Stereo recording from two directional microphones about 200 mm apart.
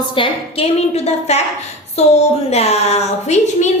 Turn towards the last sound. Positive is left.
turn(degrees=35)  # may be behind; listen again after turning